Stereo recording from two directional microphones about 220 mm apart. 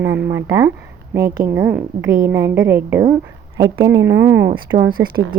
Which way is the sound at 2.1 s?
40° right (ahead or behind).